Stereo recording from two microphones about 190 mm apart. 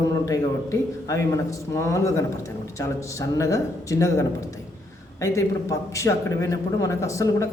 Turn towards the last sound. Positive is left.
turn(degrees=15)  # may be behind; listen again after turning